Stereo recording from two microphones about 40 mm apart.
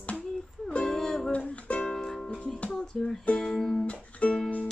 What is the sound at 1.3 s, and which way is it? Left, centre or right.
Music, left.